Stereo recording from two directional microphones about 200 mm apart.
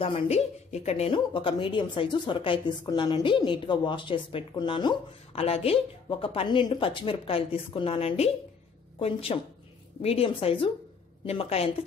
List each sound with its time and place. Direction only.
0.0 s a woman's voice: 30° left (ahead or behind)